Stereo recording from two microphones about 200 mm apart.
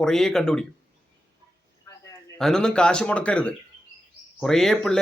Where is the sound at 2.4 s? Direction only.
5° left (ahead or behind).